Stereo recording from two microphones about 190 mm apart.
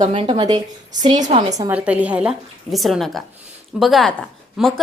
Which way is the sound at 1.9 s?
10° right (ahead or behind).